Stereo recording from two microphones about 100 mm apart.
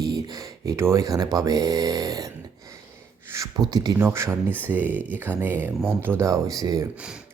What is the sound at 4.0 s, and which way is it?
Speech, 25° right (ahead or behind).